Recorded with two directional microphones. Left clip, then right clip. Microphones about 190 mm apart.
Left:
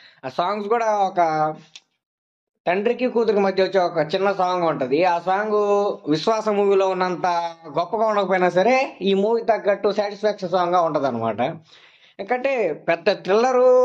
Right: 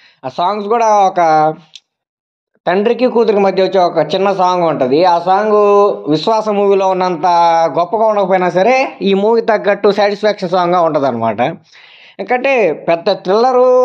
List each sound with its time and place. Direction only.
0.2 s speech: 25° right (ahead or behind)
2.6 s speech: 35° right (ahead or behind)